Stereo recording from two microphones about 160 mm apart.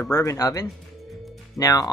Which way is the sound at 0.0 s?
20° left (ahead or behind).